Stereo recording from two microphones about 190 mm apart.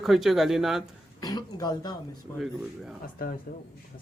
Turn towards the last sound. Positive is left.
turn(degrees=50)  # may be behind; listen again after turning